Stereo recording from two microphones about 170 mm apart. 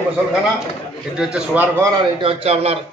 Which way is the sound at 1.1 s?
5° right (ahead or behind).